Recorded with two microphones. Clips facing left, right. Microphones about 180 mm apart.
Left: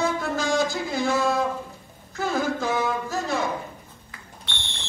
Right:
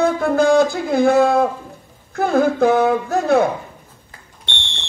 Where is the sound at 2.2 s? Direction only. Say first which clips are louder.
Right 10 dB; 55° right (ahead or behind).